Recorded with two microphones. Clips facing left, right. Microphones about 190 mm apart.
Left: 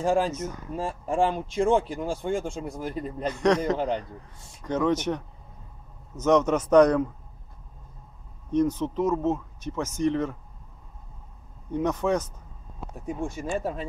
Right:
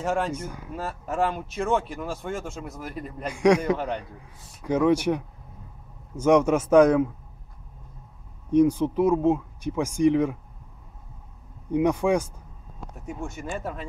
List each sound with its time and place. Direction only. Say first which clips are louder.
0.0 s speech: left 3 dB; 30° left (ahead or behind)
0.4 s speech: left 3 dB; 10° right (ahead or behind)
0.7 s speech: left 2 dB; 30° left (ahead or behind)
3.3 s speech: right 3 dB; 10° right (ahead or behind)
3.7 s speech: left 2 dB; 30° left (ahead or behind)
4.0 s speech: left 1 dB; 10° right (ahead or behind)
8.5 s speech: right 5 dB; 10° right (ahead or behind)
11.7 s speech: right 3 dB; 10° right (ahead or behind)
12.9 s speech: left 3 dB; 35° left (ahead or behind)